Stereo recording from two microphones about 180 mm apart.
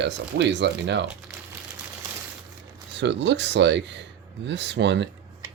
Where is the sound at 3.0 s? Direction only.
75° right (ahead or behind).